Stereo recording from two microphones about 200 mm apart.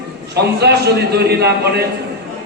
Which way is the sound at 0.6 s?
55° right (ahead or behind).